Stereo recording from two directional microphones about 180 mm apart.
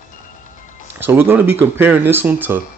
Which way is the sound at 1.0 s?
10° right (ahead or behind).